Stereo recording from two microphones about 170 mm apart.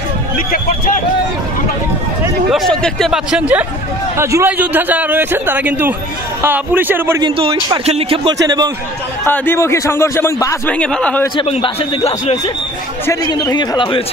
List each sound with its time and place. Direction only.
0.5 s speech: 55° left (ahead or behind)
2.5 s a man's voice: centre (ahead or behind)
7.2 s speech: 30° right (ahead or behind)
8.5 s a man's voice: 25° right (ahead or behind)
9.2 s a man's voice: 10° left (ahead or behind)
11.3 s a man's voice: 35° left (ahead or behind)
13.0 s speech: 20° left (ahead or behind)